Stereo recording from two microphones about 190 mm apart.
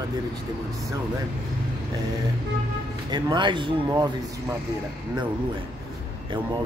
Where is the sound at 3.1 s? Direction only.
25° right (ahead or behind).